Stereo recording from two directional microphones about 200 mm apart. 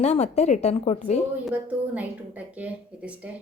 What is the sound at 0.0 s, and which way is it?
A woman's voice, 30° left (ahead or behind).